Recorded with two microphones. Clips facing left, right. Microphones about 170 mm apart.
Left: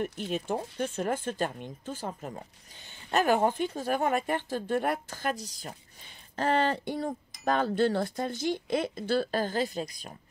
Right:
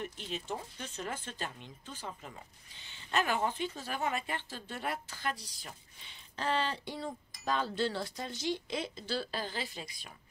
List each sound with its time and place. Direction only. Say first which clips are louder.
0.0 s speech: left 8 dB; 50° left (ahead or behind)